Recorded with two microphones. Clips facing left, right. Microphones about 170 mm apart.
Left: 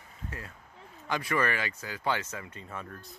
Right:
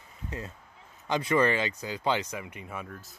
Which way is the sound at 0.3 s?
20° right (ahead or behind).